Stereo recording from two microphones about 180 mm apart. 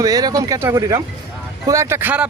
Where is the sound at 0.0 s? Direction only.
20° right (ahead or behind).